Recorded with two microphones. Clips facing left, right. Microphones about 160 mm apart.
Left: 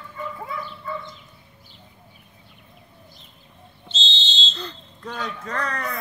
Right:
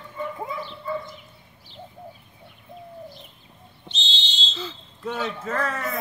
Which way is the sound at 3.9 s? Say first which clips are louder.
Left 3 dB; 15° right (ahead or behind).